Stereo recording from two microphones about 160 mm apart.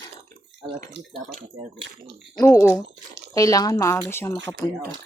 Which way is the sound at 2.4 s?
15° left (ahead or behind).